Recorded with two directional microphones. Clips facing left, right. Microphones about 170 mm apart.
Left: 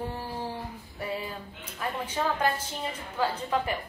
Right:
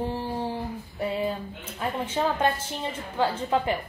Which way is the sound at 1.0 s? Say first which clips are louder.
Right 7 dB; 25° right (ahead or behind).